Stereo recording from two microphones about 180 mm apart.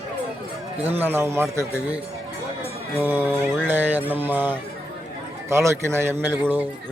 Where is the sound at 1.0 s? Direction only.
10° right (ahead or behind).